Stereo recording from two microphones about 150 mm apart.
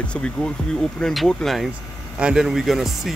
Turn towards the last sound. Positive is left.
turn(degrees=0)  # may be behind; listen again after turning